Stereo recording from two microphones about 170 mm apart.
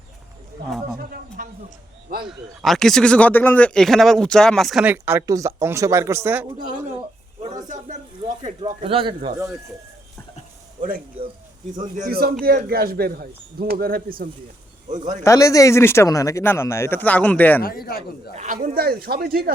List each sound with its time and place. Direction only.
0.9 s a sound: 55° right (ahead or behind)
2.2 s speech: centre (ahead or behind)
8.4 s speech: 35° right (ahead or behind)
10.8 s speech: 55° right (ahead or behind)
14.8 s speech: 45° right (ahead or behind)
15.2 s speech: 15° left (ahead or behind)
18.3 s speech: 50° right (ahead or behind)